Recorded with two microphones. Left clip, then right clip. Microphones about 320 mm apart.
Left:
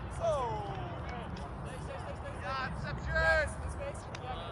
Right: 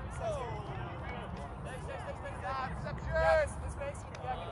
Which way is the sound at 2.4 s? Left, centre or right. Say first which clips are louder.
Left 1 dB; centre.